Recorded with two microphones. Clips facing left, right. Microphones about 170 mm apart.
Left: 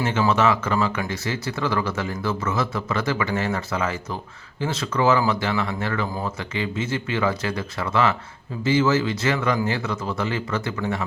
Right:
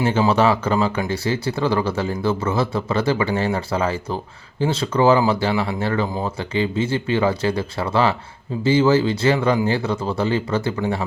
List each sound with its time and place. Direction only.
0.0 s speech: 35° right (ahead or behind)